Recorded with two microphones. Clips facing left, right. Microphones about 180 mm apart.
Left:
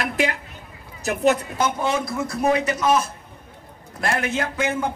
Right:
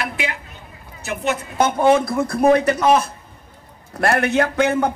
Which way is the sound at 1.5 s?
55° right (ahead or behind).